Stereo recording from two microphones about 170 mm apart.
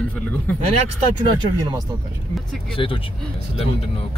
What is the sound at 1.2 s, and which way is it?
Speech, 25° right (ahead or behind).